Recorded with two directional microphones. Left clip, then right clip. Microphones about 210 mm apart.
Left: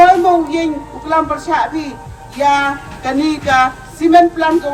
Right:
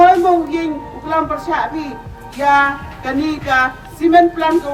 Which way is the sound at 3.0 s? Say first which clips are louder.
Left 3 dB; 40° left (ahead or behind).